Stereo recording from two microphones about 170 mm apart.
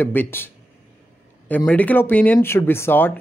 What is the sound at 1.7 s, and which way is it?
Speech, 10° left (ahead or behind).